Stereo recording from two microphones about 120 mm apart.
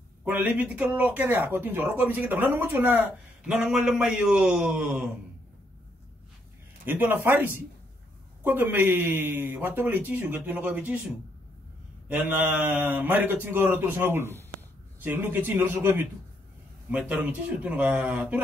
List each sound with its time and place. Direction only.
0.2 s speech: 10° right (ahead or behind)
6.8 s speech: 15° right (ahead or behind)
12.1 s speech: 15° right (ahead or behind)